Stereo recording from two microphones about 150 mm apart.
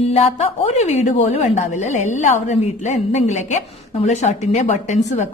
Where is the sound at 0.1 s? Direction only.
45° left (ahead or behind).